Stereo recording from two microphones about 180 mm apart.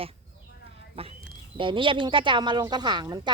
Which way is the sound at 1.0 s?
30° right (ahead or behind).